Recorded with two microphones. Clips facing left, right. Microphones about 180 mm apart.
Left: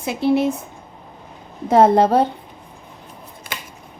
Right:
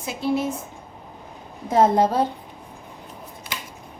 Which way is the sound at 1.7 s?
65° left (ahead or behind).